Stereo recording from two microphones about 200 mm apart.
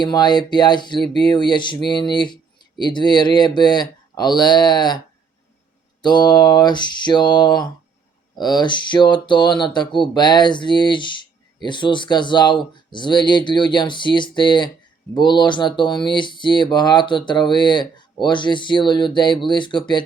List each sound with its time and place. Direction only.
0.0 s speech: 20° left (ahead or behind)
6.0 s speech: 20° left (ahead or behind)